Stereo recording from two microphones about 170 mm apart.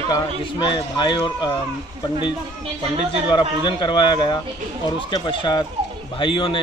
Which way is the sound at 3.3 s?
25° left (ahead or behind).